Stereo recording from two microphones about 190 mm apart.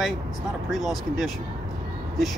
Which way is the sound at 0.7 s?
Centre (ahead or behind).